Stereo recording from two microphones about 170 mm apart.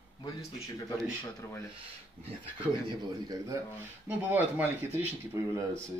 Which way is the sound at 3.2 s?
20° right (ahead or behind).